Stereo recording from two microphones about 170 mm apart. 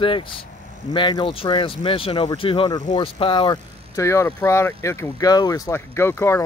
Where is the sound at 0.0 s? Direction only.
30° left (ahead or behind).